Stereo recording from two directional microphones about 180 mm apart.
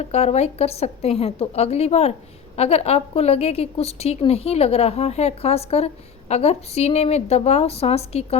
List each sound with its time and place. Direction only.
0.0 s a woman's voice: 35° left (ahead or behind)